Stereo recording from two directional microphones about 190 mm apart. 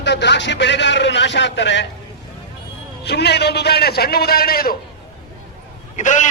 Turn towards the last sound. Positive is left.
turn(degrees=40)  # may be behind; listen again after turning